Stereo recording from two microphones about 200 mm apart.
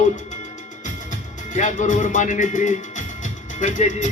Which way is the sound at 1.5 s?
40° left (ahead or behind).